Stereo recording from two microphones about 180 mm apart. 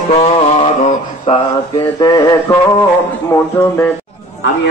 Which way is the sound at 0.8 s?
35° left (ahead or behind).